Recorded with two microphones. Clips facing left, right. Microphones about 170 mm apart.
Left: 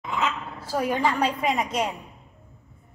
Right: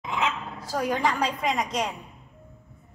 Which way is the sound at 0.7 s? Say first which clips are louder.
Left 2 dB; 5° left (ahead or behind).